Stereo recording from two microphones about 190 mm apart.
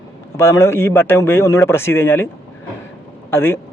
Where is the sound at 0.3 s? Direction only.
15° left (ahead or behind).